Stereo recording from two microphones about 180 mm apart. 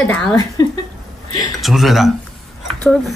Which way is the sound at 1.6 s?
Centre (ahead or behind).